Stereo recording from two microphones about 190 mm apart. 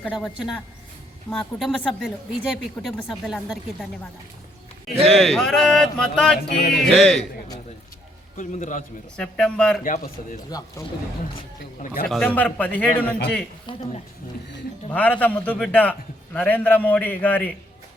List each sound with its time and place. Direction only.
0.0 s speech: centre (ahead or behind)
5.1 s speech: centre (ahead or behind)
8.4 s a man's voice: 40° left (ahead or behind)
9.1 s speech: 5° left (ahead or behind)
9.8 s a man's voice: 45° left (ahead or behind)
10.8 s a man's voice: 15° left (ahead or behind)
12.0 s a man's voice: 5° left (ahead or behind)
13.7 s speech: 25° left (ahead or behind)
14.8 s a man's voice: 5° left (ahead or behind)